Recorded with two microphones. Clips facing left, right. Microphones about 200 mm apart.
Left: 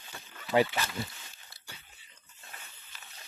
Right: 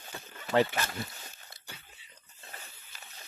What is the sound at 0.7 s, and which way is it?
Speech, 45° right (ahead or behind).